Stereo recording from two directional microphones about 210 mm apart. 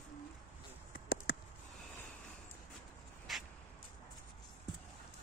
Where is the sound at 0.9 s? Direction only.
45° left (ahead or behind).